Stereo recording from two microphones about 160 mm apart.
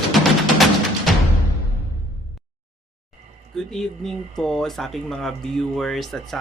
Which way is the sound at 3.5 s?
5° left (ahead or behind).